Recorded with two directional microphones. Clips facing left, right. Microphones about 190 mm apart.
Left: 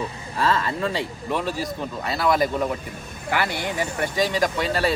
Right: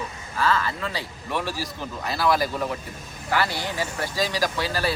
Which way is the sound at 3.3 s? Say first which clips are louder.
Left 1 dB; 15° left (ahead or behind).